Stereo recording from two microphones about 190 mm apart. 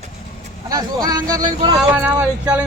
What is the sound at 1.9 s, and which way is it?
Speech, 10° right (ahead or behind).